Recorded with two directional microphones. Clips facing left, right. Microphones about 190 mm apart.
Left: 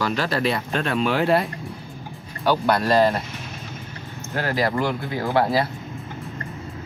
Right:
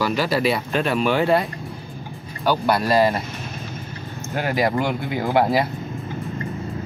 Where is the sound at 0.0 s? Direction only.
5° right (ahead or behind).